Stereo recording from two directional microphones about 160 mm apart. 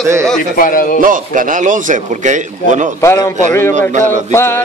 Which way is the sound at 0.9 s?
55° right (ahead or behind).